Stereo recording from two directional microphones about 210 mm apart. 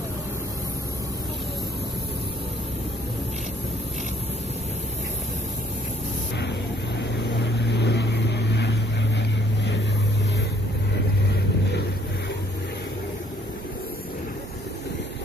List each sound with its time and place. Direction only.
7.0 s vehicle: 55° left (ahead or behind)